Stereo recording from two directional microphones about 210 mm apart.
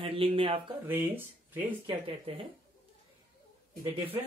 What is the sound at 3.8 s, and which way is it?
Speech, 10° right (ahead or behind).